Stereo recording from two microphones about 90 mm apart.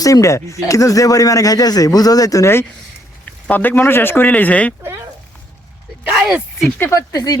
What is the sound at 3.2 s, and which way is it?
Speech, 20° left (ahead or behind).